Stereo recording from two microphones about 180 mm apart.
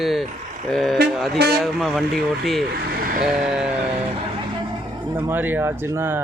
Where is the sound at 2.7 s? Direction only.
55° right (ahead or behind).